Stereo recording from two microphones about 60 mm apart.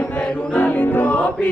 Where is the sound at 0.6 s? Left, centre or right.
Left.